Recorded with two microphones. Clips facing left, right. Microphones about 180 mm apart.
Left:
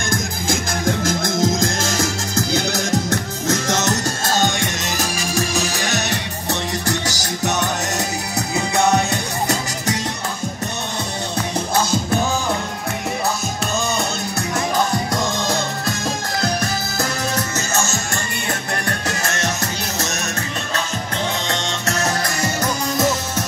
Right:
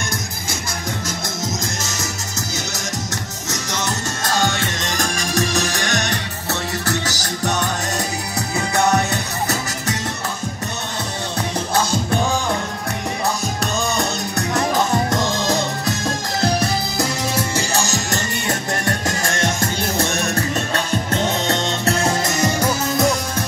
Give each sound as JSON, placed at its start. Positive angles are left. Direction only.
{"t": 0.8, "sound": "music", "side_deg": 50}
{"t": 1.4, "sound": "music", "side_deg": 90}
{"t": 3.1, "sound": "music", "side_deg": 50}
{"t": 4.3, "sound": "music", "side_deg": 20}
{"t": 4.8, "sound": "music", "side_deg": 5}
{"t": 6.5, "sound": "music", "side_deg": 15}
{"t": 17.0, "sound": "music", "side_deg": -10}
{"t": 17.7, "sound": "music", "side_deg": -35}
{"t": 22.9, "sound": "music", "side_deg": 0}